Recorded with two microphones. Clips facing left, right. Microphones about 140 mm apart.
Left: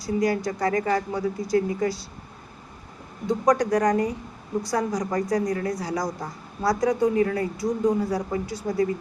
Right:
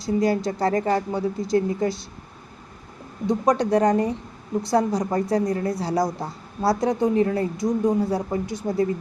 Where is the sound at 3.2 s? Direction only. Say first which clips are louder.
Right 1 dB; 25° right (ahead or behind).